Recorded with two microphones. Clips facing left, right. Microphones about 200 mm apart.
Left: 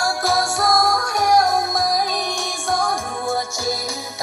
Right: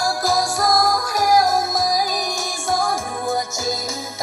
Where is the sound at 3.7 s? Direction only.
Centre (ahead or behind).